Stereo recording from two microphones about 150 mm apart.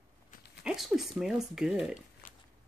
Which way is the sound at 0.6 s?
5° right (ahead or behind).